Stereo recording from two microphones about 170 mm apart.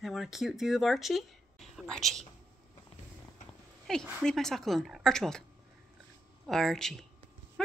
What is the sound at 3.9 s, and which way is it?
Speech, 5° left (ahead or behind).